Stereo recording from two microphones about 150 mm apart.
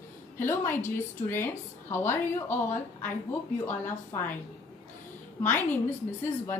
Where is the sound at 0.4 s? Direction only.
15° left (ahead or behind).